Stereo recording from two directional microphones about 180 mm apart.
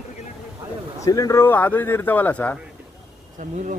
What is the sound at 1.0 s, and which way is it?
A man's voice, 20° left (ahead or behind).